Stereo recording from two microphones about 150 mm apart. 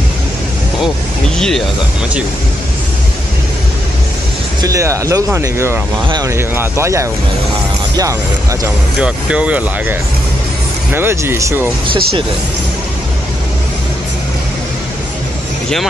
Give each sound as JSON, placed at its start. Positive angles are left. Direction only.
{"t": 4.6, "sound": "speech", "side_deg": -20}
{"t": 6.0, "sound": "speech", "side_deg": -30}
{"t": 6.3, "sound": "speech", "side_deg": -15}
{"t": 9.0, "sound": "speech", "side_deg": -5}